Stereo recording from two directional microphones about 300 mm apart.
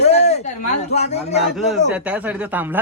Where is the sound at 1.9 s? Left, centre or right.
Centre.